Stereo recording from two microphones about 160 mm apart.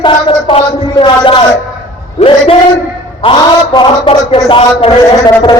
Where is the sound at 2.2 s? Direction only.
40° left (ahead or behind).